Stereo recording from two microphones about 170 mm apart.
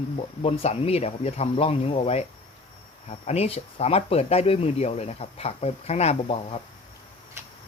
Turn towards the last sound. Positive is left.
turn(degrees=35)  # may be behind; listen again after turning